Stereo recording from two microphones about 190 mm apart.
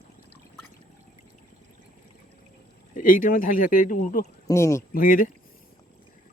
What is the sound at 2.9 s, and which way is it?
Speech, 45° left (ahead or behind).